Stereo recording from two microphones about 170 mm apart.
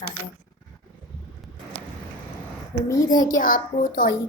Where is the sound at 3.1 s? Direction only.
50° left (ahead or behind).